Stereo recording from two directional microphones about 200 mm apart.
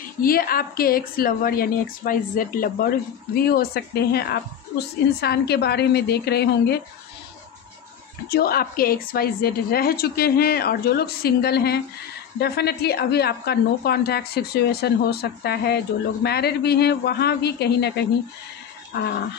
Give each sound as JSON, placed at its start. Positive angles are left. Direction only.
{"t": 0.2, "sound": "a woman's voice", "side_deg": 45}
{"t": 8.3, "sound": "a woman's voice", "side_deg": 50}